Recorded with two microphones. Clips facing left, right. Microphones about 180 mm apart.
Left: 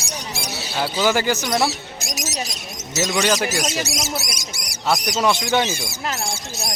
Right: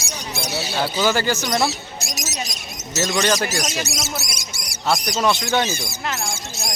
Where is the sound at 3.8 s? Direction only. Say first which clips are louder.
Left 2 dB; 25° right (ahead or behind).